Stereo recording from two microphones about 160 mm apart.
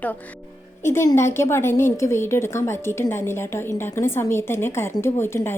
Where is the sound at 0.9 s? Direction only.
15° left (ahead or behind).